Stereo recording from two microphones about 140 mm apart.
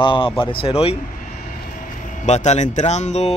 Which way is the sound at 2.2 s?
55° left (ahead or behind).